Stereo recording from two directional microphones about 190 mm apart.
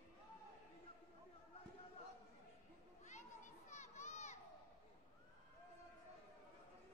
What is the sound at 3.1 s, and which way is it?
Children playing, 40° left (ahead or behind).